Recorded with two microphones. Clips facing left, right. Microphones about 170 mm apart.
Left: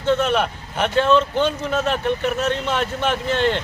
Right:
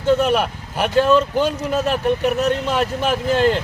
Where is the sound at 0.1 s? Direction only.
10° right (ahead or behind).